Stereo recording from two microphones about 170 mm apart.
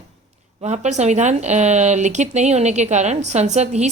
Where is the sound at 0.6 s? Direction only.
40° right (ahead or behind).